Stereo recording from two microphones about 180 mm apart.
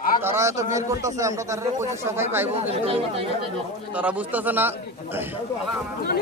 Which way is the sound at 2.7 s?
30° right (ahead or behind).